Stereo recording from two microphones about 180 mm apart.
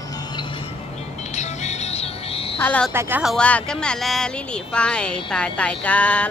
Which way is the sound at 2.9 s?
15° right (ahead or behind).